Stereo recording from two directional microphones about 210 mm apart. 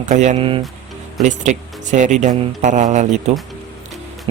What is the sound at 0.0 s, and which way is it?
Speech, 35° right (ahead or behind).